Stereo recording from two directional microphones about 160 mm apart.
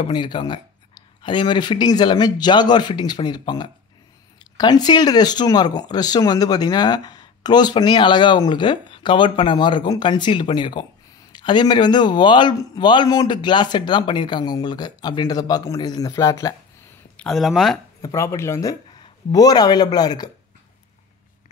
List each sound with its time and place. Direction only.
0.0 s speech: 30° left (ahead or behind)
17.2 s speech: centre (ahead or behind)
18.0 s speech: 15° left (ahead or behind)